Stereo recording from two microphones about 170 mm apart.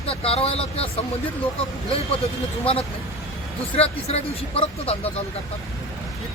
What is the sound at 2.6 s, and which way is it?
Speech, 35° left (ahead or behind).